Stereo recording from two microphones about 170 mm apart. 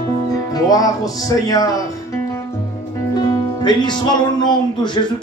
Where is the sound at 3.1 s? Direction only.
25° left (ahead or behind).